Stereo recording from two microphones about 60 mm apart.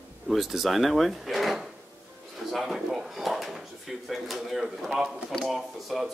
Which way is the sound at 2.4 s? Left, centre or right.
Centre.